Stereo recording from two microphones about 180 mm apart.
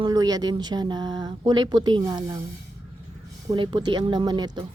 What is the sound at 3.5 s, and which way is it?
Speech, 25° right (ahead or behind).